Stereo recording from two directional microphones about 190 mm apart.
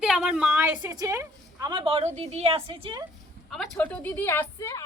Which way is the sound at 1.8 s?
30° right (ahead or behind).